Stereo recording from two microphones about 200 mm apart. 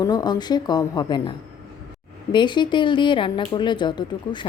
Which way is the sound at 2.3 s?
25° left (ahead or behind).